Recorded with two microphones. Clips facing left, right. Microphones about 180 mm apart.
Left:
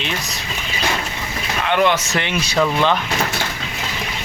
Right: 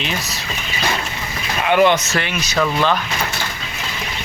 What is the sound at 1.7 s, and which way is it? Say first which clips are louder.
Speech: right 3 dB; centre (ahead or behind).